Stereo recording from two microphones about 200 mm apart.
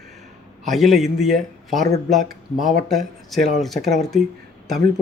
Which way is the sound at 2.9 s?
Centre (ahead or behind).